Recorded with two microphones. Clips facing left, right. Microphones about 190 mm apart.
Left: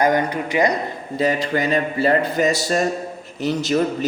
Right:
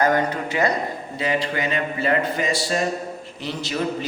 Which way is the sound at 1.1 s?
40° left (ahead or behind).